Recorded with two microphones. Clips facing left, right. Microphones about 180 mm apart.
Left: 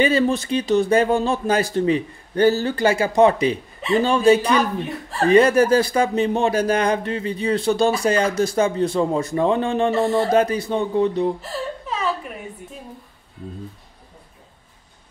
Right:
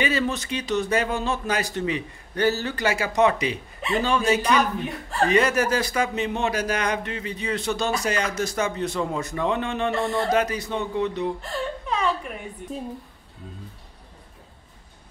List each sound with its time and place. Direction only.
0.0 s speech: 30° left (ahead or behind)
9.9 s speech: centre (ahead or behind)
10.3 s speech: 30° left (ahead or behind)
11.4 s whimper: 5° left (ahead or behind)